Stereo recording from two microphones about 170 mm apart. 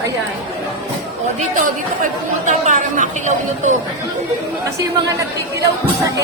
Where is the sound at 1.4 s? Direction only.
50° right (ahead or behind).